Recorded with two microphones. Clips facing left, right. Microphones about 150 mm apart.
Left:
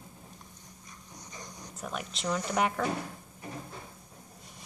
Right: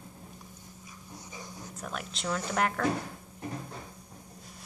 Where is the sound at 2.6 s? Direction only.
5° left (ahead or behind).